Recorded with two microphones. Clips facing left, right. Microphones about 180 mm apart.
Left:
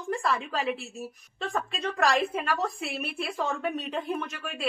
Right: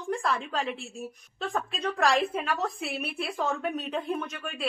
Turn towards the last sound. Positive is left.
turn(degrees=0)  # may be behind; listen again after turning